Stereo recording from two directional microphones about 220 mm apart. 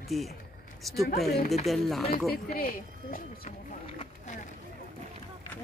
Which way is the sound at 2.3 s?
40° left (ahead or behind).